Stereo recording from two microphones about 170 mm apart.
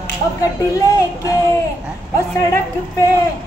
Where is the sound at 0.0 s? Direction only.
20° left (ahead or behind).